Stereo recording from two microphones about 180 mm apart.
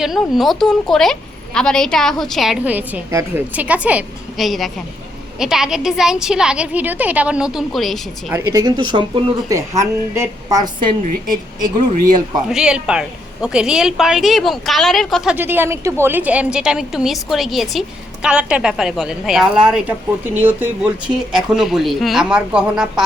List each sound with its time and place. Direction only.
0.0 s a woman's voice: centre (ahead or behind)
8.3 s speech: 15° right (ahead or behind)
12.5 s a woman's voice: 5° right (ahead or behind)